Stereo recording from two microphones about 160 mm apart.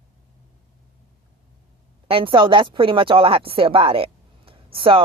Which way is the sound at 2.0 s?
35° right (ahead or behind).